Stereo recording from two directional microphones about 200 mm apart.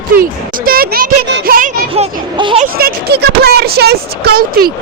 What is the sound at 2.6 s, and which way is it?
Speech, 50° right (ahead or behind).